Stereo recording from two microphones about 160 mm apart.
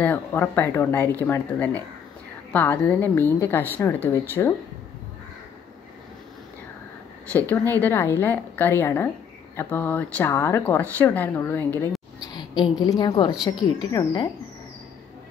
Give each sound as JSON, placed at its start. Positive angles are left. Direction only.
{"t": 0.0, "sound": "speech", "side_deg": 10}
{"t": 7.7, "sound": "speech", "side_deg": 10}
{"t": 12.3, "sound": "a woman's voice", "side_deg": 25}